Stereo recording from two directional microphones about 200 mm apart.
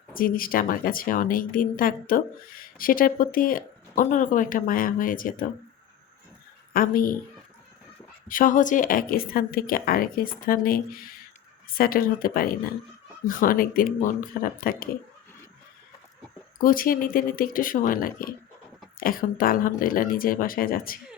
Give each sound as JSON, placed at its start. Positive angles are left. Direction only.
{"t": 0.1, "sound": "a woman's voice", "side_deg": 45}
{"t": 6.7, "sound": "a woman's voice", "side_deg": 45}
{"t": 8.3, "sound": "a woman's voice", "side_deg": 45}
{"t": 16.6, "sound": "a woman's voice", "side_deg": 45}